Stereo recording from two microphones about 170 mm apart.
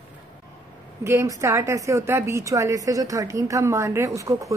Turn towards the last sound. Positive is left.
turn(degrees=-20)  # may be behind; listen again after turning